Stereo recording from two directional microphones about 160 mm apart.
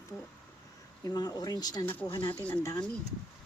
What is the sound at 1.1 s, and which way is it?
Speech, 25° left (ahead or behind).